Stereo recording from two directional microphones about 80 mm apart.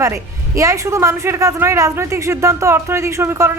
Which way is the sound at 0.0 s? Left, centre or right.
Right.